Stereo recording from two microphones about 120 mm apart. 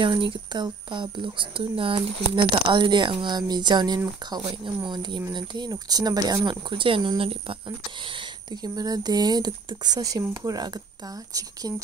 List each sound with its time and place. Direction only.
0.2 s speech: 40° right (ahead or behind)
6.7 s speech: 45° right (ahead or behind)
8.5 s speech: 35° right (ahead or behind)